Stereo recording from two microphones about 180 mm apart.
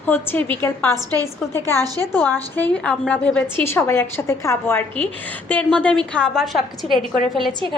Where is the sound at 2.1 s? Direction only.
10° left (ahead or behind).